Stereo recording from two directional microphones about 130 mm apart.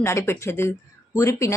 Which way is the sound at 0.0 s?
20° left (ahead or behind).